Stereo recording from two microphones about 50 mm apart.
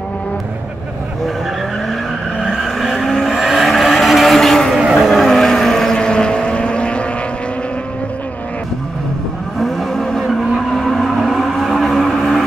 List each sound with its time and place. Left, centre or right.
2.4 s vehicle: centre
2.8 s vehicle: centre
5.9 s vehicle: centre
9.6 s vehicle: centre